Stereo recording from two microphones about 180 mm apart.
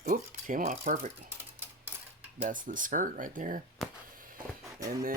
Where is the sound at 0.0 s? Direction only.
45° right (ahead or behind).